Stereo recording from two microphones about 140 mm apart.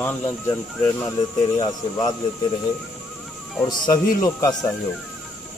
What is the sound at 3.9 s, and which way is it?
Speech, 25° left (ahead or behind).